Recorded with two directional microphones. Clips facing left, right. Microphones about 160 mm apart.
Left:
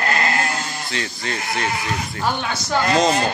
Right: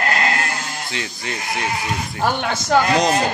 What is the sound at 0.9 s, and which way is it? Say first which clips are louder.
Speech: left 3 dB; 15° right (ahead or behind).